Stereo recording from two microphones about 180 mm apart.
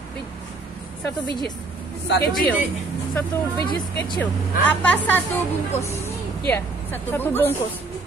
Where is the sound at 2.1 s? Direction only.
65° left (ahead or behind).